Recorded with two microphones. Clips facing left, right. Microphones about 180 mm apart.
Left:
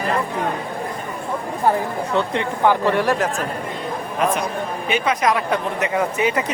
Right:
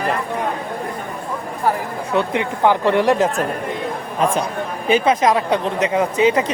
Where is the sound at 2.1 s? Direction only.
15° right (ahead or behind).